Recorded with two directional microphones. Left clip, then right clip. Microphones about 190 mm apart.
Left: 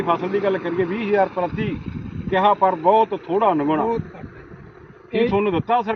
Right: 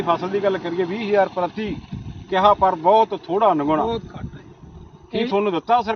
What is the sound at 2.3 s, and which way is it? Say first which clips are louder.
Speech: right 1 dB; 5° left (ahead or behind).